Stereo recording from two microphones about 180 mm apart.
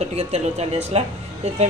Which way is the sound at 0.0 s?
35° right (ahead or behind).